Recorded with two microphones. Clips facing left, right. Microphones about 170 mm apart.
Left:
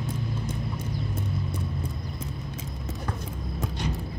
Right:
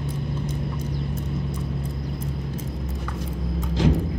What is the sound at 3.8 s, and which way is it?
Music, 90° right.